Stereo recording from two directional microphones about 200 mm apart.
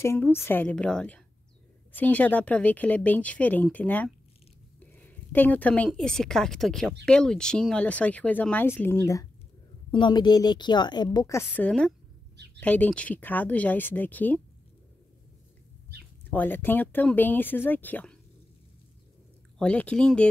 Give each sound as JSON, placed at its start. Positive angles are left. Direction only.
{"t": 0.0, "sound": "a woman's voice", "side_deg": 10}
{"t": 16.3, "sound": "speech", "side_deg": 10}
{"t": 19.6, "sound": "speech", "side_deg": 5}